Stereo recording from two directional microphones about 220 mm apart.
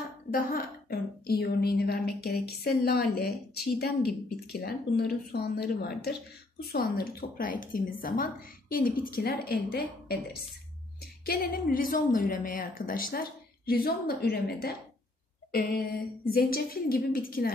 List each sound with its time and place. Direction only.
0.3 s a woman's voice: 40° left (ahead or behind)
11.2 s a woman's voice: 45° left (ahead or behind)
16.3 s a woman's voice: 40° left (ahead or behind)